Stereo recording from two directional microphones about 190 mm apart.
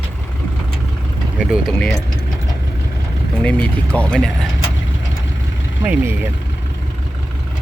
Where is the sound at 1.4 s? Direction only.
Centre (ahead or behind).